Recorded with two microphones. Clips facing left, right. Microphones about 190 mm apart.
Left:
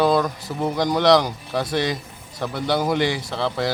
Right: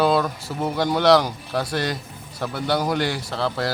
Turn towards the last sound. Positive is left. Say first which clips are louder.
# left 1 dB
turn(degrees=0)  # may be behind; listen again after turning